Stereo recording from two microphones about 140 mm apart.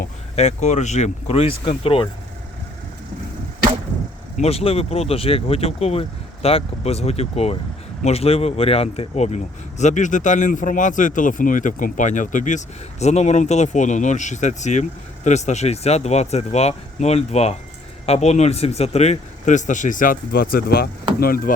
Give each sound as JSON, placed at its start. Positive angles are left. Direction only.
{"t": 0.3, "sound": "speech", "side_deg": 50}
{"t": 4.4, "sound": "speech", "side_deg": 45}